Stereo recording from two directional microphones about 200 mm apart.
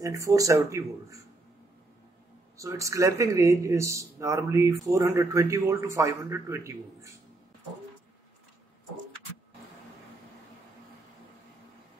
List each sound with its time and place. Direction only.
0.0 s speech: 15° right (ahead or behind)
2.5 s speech: 15° right (ahead or behind)